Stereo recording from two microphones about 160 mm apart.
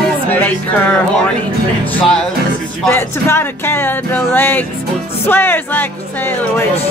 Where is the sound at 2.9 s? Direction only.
15° left (ahead or behind).